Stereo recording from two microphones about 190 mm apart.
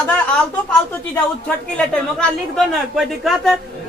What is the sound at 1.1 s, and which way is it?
A man's voice, 5° left (ahead or behind).